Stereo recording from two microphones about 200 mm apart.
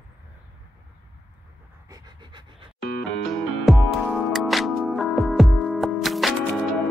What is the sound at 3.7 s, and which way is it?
Music, centre (ahead or behind).